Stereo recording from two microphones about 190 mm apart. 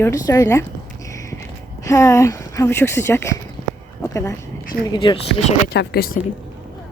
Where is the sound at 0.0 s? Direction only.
15° left (ahead or behind).